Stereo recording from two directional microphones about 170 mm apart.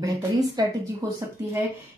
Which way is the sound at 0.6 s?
25° right (ahead or behind).